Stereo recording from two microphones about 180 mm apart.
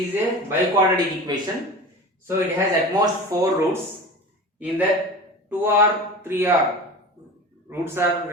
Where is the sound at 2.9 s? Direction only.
20° right (ahead or behind).